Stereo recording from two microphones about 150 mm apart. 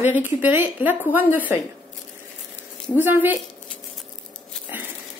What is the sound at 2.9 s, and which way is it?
Speech, 15° right (ahead or behind).